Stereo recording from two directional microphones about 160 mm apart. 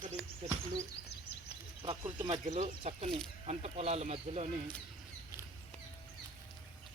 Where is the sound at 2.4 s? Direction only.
45° right (ahead or behind).